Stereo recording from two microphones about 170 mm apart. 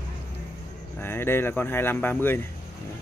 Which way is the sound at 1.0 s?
15° left (ahead or behind).